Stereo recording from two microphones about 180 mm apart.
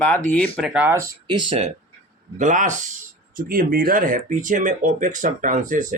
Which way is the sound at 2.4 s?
45° right (ahead or behind).